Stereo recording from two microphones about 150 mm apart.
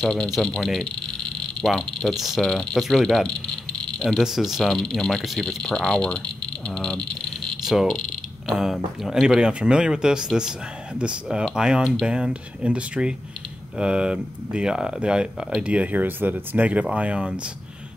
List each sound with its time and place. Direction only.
0.0 s speech: 5° left (ahead or behind)